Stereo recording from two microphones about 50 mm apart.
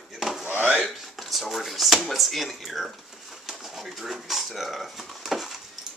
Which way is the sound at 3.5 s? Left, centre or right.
Centre.